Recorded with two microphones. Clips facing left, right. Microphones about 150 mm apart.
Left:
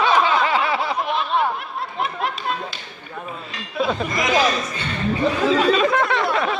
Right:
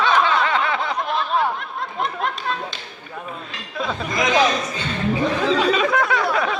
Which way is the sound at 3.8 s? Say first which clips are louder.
Left 2 dB; 10° left (ahead or behind).